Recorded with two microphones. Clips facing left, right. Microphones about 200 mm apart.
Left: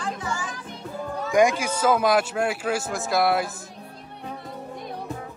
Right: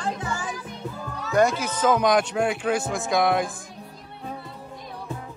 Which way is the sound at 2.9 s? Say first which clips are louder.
Left 2 dB; centre (ahead or behind).